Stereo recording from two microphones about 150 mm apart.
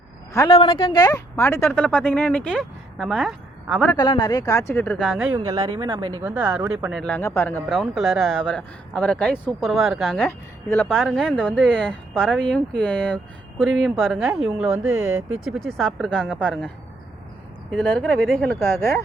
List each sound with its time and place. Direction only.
0.4 s speech: 35° left (ahead or behind)
1.0 s speech: 15° left (ahead or behind); by 3.8 s centre (ahead or behind)
3.9 s speech: 30° left (ahead or behind); by 5.0 s 10° left (ahead or behind)
5.0 s speech: 5° right (ahead or behind)
5.5 s speech: 35° right (ahead or behind)
6.2 s speech: 10° right (ahead or behind)
6.9 s speech: 5° left (ahead or behind)
7.7 s speech: centre (ahead or behind)
17.7 s speech: 5° left (ahead or behind)
18.6 s speech: 15° left (ahead or behind)